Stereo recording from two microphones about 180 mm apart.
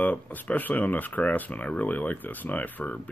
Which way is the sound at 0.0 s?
10° left (ahead or behind).